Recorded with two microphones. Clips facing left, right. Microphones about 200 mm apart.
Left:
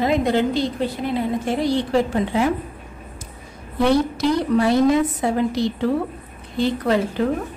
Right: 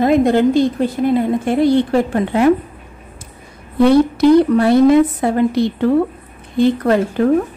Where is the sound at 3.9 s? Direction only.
60° right (ahead or behind).